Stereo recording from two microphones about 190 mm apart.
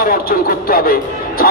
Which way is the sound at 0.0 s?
50° left (ahead or behind).